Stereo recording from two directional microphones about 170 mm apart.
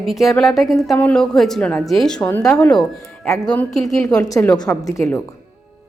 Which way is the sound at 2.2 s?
15° left (ahead or behind).